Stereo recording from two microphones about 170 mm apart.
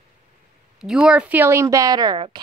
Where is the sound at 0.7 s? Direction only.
5° right (ahead or behind); by 2.4 s 25° right (ahead or behind).